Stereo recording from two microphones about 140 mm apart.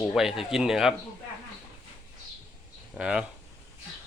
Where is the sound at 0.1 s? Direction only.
Centre (ahead or behind).